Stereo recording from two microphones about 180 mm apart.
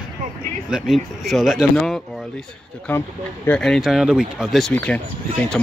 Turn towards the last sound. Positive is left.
turn(degrees=5)  # may be behind; listen again after turning